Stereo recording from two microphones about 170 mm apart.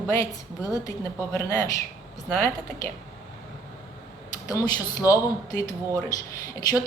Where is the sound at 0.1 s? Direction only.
20° left (ahead or behind).